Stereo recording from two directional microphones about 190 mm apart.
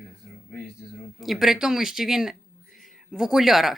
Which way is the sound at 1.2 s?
Centre (ahead or behind).